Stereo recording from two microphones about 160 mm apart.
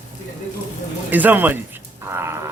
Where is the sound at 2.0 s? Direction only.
15° right (ahead or behind).